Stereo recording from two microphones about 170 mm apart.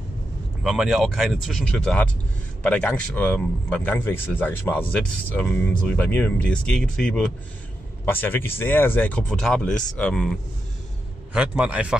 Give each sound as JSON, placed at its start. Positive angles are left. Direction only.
{"t": 0.7, "sound": "a man's voice", "side_deg": 0}
{"t": 11.3, "sound": "a man's voice", "side_deg": -5}